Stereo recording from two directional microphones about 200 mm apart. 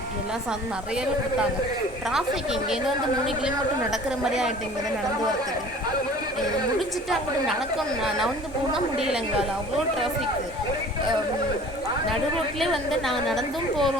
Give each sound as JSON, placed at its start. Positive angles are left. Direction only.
{"t": 2.0, "sound": "a woman's voice", "side_deg": 0}
{"t": 3.9, "sound": "a woman's voice", "side_deg": 0}
{"t": 6.7, "sound": "a woman's voice", "side_deg": 0}
{"t": 12.5, "sound": "a woman's voice", "side_deg": 0}